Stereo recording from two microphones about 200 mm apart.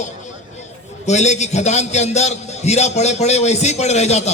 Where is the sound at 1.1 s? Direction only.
35° left (ahead or behind).